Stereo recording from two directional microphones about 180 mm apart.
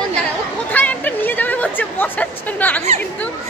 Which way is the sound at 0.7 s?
10° left (ahead or behind).